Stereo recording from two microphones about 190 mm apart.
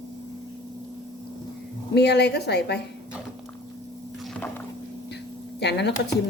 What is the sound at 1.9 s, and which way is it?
Speech, 60° left (ahead or behind).